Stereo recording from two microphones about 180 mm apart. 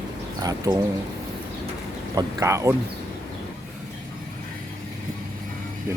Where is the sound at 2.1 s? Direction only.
15° right (ahead or behind).